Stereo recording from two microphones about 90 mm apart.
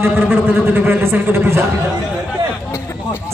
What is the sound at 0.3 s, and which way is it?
Speech, 20° right (ahead or behind).